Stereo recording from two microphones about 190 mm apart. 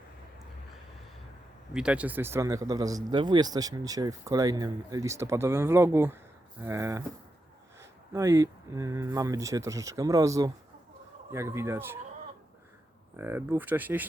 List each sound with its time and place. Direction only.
1.7 s speech: 5° right (ahead or behind)
13.1 s speech: 10° right (ahead or behind)